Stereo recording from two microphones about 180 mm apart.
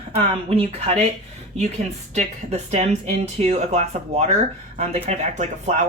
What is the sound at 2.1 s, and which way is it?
Speech, 40° right (ahead or behind).